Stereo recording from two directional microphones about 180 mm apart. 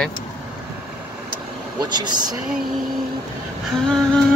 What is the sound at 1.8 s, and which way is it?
Speech, 25° right (ahead or behind).